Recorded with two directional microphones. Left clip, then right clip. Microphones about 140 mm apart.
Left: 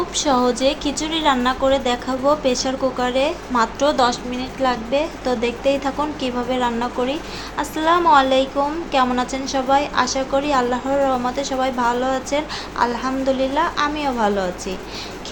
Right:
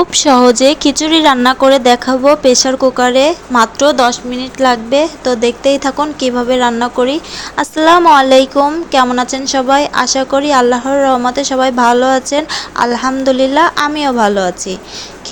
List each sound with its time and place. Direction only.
0.1 s speech: 55° right (ahead or behind)